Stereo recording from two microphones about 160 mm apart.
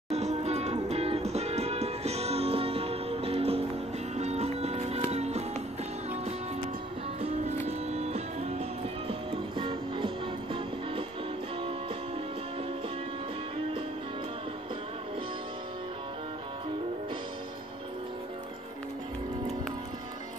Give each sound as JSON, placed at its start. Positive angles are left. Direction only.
{"t": 0.1, "sound": "music", "side_deg": -45}
{"t": 7.2, "sound": "music", "side_deg": -40}